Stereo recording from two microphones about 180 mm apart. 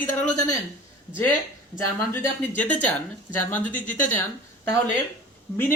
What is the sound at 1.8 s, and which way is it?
A woman's voice, 10° left (ahead or behind).